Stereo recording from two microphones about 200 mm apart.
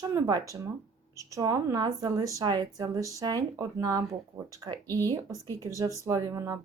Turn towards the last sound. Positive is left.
turn(degrees=-15)  # may be behind; listen again after turning